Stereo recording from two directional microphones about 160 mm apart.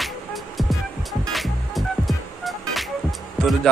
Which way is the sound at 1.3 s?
Centre (ahead or behind).